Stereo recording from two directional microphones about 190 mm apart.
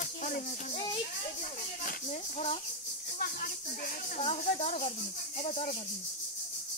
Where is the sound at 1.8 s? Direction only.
45° left (ahead or behind).